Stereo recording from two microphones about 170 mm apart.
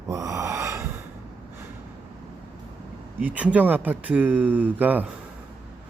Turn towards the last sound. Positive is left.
turn(degrees=-10)  # may be behind; listen again after turning